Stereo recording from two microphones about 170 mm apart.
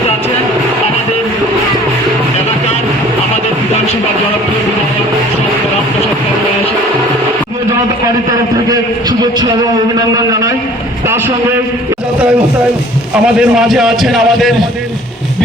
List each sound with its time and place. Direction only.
8.7 s a man's voice: 20° right (ahead or behind)
13.2 s a man's voice: centre (ahead or behind)